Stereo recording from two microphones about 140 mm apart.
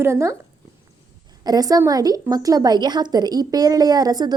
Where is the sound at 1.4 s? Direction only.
25° right (ahead or behind).